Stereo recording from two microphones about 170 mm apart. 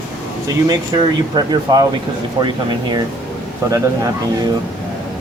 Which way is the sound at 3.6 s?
20° right (ahead or behind).